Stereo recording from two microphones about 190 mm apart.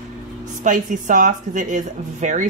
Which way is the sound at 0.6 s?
40° right (ahead or behind).